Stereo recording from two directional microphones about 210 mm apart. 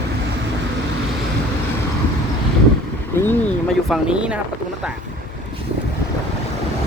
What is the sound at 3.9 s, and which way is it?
Speech, 5° right (ahead or behind).